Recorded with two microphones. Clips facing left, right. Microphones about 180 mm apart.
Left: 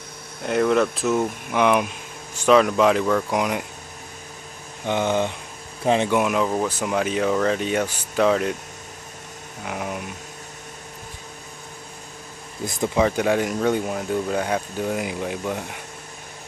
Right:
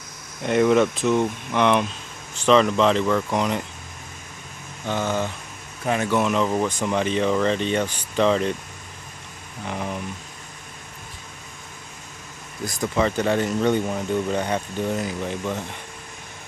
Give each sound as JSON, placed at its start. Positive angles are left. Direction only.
{"t": 0.4, "sound": "speech", "side_deg": 0}
{"t": 4.8, "sound": "speech", "side_deg": 20}
{"t": 6.1, "sound": "speech", "side_deg": 5}
{"t": 9.7, "sound": "speech", "side_deg": 5}
{"t": 12.6, "sound": "speech", "side_deg": 25}
{"t": 13.0, "sound": "speech", "side_deg": 10}